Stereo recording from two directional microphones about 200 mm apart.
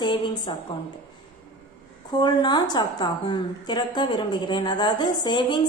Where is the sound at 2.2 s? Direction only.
20° left (ahead or behind).